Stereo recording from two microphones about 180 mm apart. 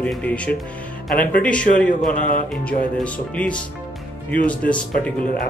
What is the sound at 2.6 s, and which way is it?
Speech, 5° left (ahead or behind).